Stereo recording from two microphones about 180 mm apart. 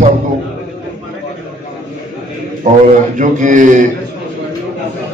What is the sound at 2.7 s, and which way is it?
A man's voice, 45° right (ahead or behind).